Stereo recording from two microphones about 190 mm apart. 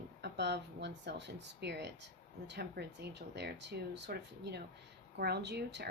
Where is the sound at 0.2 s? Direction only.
65° right (ahead or behind).